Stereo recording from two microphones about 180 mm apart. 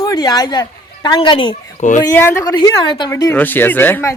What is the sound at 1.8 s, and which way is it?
Speech, 45° left (ahead or behind).